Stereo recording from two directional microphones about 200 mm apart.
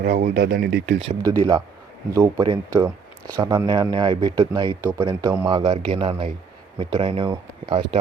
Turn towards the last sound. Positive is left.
turn(degrees=-25)  # may be behind; listen again after turning